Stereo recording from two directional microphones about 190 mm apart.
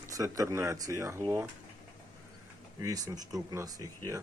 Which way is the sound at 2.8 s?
20° right (ahead or behind).